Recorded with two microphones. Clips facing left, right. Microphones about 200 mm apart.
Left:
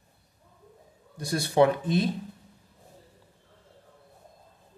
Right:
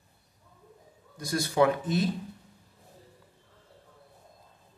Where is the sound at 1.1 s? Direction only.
30° left (ahead or behind).